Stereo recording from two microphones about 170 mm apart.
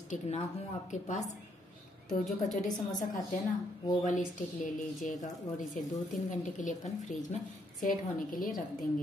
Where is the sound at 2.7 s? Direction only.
25° left (ahead or behind).